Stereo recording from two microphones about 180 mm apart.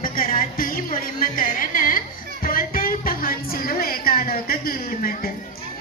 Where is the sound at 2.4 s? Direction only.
50° left (ahead or behind).